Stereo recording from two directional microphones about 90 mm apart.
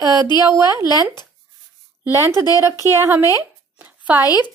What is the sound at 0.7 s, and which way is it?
Speech, 50° left (ahead or behind).